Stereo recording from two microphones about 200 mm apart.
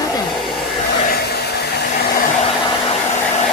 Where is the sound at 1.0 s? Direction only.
50° left (ahead or behind).